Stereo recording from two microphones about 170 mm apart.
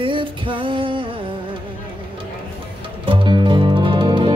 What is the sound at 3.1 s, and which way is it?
Music, 30° right (ahead or behind).